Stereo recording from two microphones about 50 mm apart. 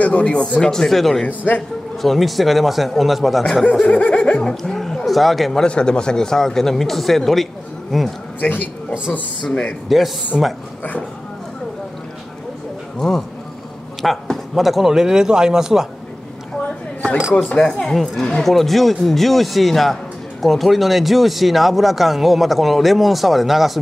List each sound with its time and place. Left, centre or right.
0.0 s speech: left
0.6 s speech: centre
1.2 s a man's voice: left
2.0 s speech: centre
3.8 s speech: left
4.4 s speech: centre
5.7 s speech: centre
8.4 s a man's voice: left
9.4 s speech: centre
9.8 s a man's voice: centre
14.0 s a sound: centre
14.5 s a man's voice: centre
17.6 s speech: centre